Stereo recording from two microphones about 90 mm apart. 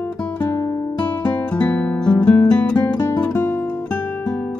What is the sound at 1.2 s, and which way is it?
Music, 15° left (ahead or behind).